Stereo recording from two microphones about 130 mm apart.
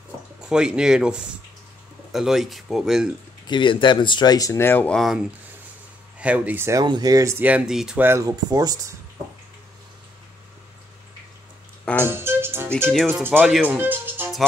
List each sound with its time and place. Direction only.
0.4 s speech: 5° right (ahead or behind)
3.4 s speech: 40° left (ahead or behind); by 4.9 s 15° left (ahead or behind)
4.9 s speech: centre (ahead or behind); by 6.8 s 15° right (ahead or behind)
6.8 s speech: 30° right (ahead or behind); by 8.0 s 5° right (ahead or behind)
8.0 s speech: 20° right (ahead or behind)
12.0 s music: 20° right (ahead or behind)
13.1 s speech: 15° right (ahead or behind)